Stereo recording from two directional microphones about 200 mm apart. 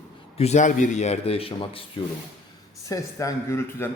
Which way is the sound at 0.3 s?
35° left (ahead or behind).